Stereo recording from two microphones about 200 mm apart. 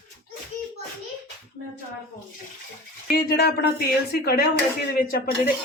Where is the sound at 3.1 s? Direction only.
50° left (ahead or behind).